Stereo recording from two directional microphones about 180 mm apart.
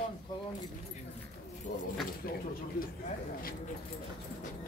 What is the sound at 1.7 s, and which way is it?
Speech, 45° left (ahead or behind).